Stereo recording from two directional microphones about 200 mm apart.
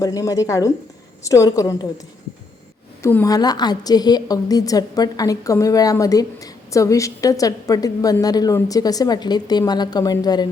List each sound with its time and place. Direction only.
0.0 s a woman's voice: 15° left (ahead or behind)
3.0 s a woman's voice: 10° left (ahead or behind)